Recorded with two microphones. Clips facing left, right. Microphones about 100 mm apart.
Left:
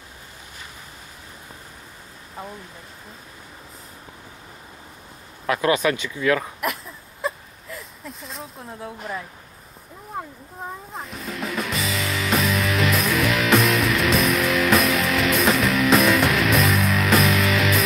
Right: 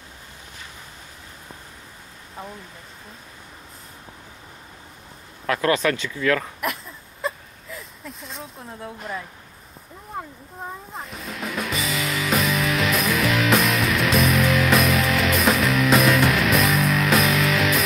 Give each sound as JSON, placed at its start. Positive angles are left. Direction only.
{"t": 5.5, "sound": "speech", "side_deg": 15}
{"t": 6.6, "sound": "a sound", "side_deg": 0}
{"t": 10.1, "sound": "music", "side_deg": 0}